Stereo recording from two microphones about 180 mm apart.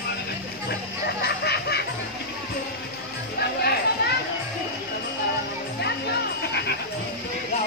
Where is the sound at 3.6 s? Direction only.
60° left (ahead or behind).